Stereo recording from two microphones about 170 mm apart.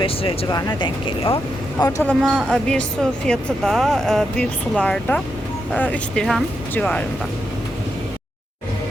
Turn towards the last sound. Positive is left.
turn(degrees=5)  # may be behind; listen again after turning